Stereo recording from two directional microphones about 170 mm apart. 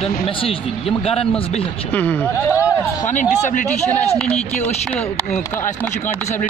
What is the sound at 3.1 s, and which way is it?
Speech, 45° left (ahead or behind).